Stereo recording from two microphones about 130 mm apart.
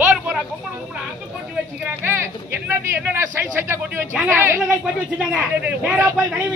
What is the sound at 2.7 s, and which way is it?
Speech, 20° right (ahead or behind).